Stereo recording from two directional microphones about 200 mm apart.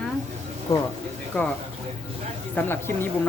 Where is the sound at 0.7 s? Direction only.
15° left (ahead or behind).